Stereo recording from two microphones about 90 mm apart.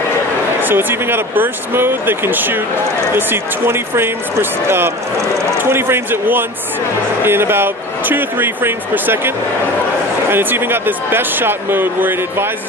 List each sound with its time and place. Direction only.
0.6 s speech: 20° right (ahead or behind)
10.3 s speech: 25° right (ahead or behind)